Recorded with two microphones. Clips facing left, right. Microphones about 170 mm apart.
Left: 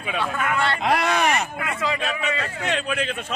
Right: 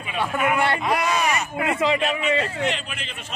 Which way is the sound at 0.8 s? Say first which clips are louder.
Left 1 dB; 70° left (ahead or behind).